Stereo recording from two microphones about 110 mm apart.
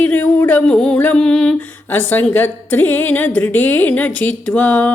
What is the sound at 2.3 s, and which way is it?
A woman's voice, 15° left (ahead or behind).